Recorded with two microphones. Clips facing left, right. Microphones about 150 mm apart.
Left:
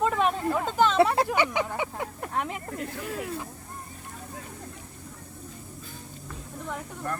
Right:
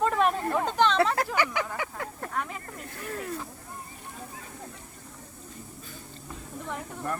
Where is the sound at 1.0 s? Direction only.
20° left (ahead or behind).